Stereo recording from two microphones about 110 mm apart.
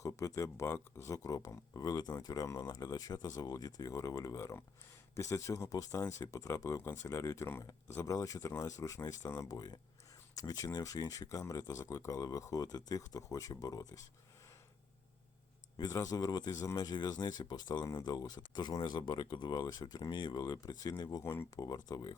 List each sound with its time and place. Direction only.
0.0 s speech: 30° left (ahead or behind)
15.8 s speech: 30° left (ahead or behind)